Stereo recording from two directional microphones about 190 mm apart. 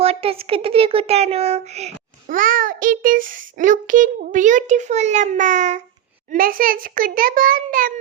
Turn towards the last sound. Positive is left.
turn(degrees=-45)  # may be behind; listen again after turning